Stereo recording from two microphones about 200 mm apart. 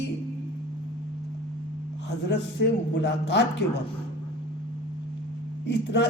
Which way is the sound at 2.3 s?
60° left (ahead or behind).